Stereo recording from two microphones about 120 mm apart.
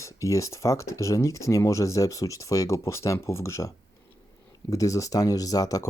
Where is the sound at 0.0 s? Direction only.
25° left (ahead or behind).